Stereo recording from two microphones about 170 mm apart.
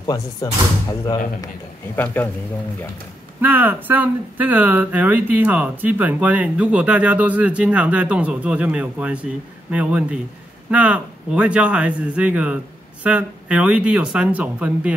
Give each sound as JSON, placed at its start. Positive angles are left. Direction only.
{"t": 0.0, "sound": "speech", "side_deg": 25}
{"t": 2.2, "sound": "a man's voice", "side_deg": 10}
{"t": 3.3, "sound": "speech", "side_deg": -10}